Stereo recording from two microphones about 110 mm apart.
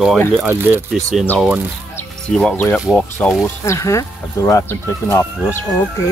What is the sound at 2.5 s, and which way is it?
Speech, 20° left (ahead or behind).